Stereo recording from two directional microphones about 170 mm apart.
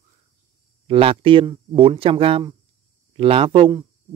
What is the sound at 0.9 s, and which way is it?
Speech, 35° right (ahead or behind).